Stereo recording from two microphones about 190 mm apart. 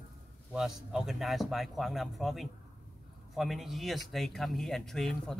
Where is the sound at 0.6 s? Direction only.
Centre (ahead or behind).